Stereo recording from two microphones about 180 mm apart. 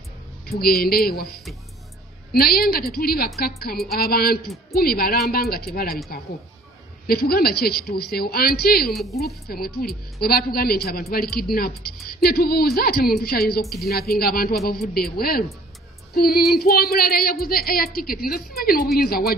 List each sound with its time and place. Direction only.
0.5 s a woman's voice: 60° left (ahead or behind)
7.1 s a woman's voice: 55° left (ahead or behind)